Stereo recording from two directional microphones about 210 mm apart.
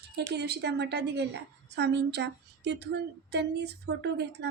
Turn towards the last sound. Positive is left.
turn(degrees=-50)  # may be behind; listen again after turning